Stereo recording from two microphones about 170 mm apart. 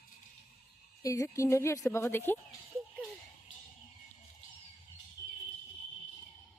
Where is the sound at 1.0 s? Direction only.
20° left (ahead or behind).